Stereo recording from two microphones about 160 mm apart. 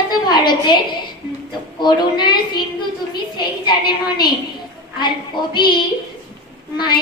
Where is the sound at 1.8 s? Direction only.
30° left (ahead or behind).